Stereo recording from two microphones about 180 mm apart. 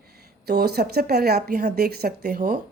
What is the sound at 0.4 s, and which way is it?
Speech, 65° right (ahead or behind).